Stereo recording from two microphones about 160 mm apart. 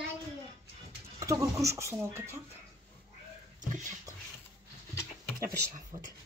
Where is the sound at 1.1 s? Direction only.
20° right (ahead or behind).